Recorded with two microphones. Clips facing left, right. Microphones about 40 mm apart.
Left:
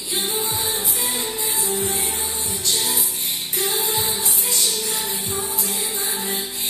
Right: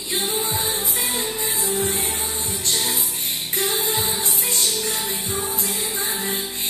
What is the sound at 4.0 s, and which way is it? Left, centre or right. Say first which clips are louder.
Music: even; right.